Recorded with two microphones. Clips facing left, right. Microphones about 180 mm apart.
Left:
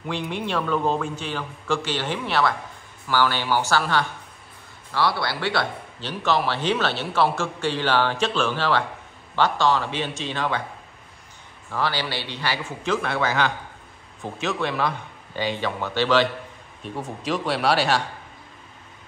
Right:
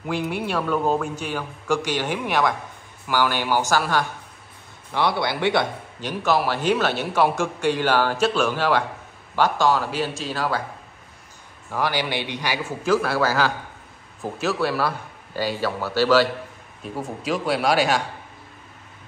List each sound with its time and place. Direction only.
0.0 s a man's voice: 5° right (ahead or behind)
11.7 s a man's voice: 15° right (ahead or behind)
12.6 s a man's voice: 5° right (ahead or behind)